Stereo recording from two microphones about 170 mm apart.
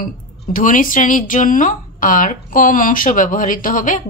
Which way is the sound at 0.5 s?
50° left (ahead or behind).